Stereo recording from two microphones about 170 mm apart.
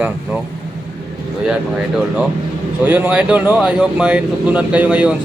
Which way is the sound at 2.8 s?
10° right (ahead or behind).